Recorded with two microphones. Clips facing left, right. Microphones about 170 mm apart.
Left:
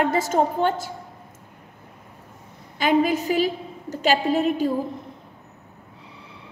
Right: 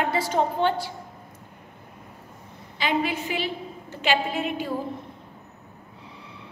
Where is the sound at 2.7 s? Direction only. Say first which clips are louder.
Left 6 dB; 45° left (ahead or behind).